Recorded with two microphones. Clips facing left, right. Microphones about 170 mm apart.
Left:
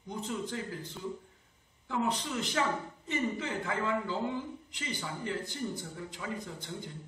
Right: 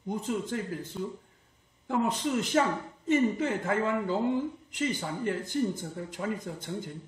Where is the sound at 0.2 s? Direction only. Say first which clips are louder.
Even; 50° right (ahead or behind).